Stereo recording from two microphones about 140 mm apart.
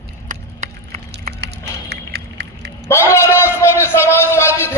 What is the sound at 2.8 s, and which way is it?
A man's voice, 20° left (ahead or behind).